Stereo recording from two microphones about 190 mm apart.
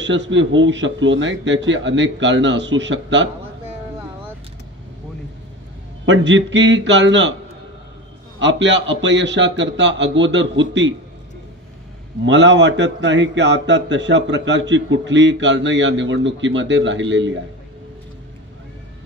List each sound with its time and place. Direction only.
0.0 s a man's voice: 75° right (ahead or behind)
6.0 s a man's voice: 70° right (ahead or behind)
8.4 s a man's voice: 70° right (ahead or behind)
12.3 s a man's voice: 70° right (ahead or behind)